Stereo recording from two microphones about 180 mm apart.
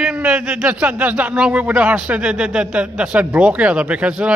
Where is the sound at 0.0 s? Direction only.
5° right (ahead or behind).